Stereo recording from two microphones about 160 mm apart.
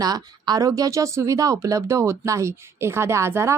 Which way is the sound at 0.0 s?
25° right (ahead or behind).